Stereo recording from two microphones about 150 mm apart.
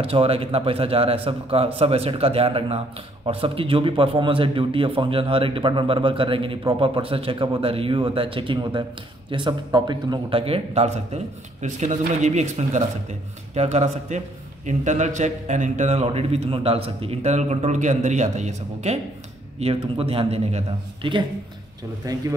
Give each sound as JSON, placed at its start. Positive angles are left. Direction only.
{"t": 0.0, "sound": "a man's voice", "side_deg": -40}
{"t": 19.6, "sound": "a man's voice", "side_deg": -40}
{"t": 22.0, "sound": "speech", "side_deg": -25}